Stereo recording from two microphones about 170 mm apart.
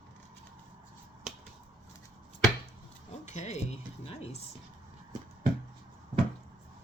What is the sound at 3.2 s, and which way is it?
Speech, 40° left (ahead or behind).